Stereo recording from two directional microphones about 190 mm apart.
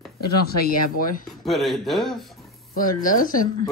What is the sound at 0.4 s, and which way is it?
Speech, 50° left (ahead or behind).